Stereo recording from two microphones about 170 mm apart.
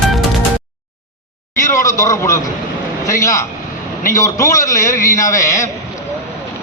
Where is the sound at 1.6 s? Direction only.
15° left (ahead or behind).